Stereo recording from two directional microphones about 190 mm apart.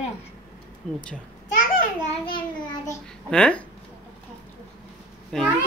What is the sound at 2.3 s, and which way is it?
Child singing, 25° left (ahead or behind).